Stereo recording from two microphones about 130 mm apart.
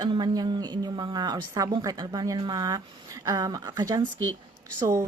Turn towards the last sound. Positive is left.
turn(degrees=-25)  # may be behind; listen again after turning